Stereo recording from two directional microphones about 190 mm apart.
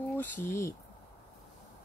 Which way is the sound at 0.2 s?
10° left (ahead or behind).